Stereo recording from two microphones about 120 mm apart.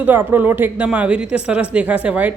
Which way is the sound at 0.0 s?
15° right (ahead or behind).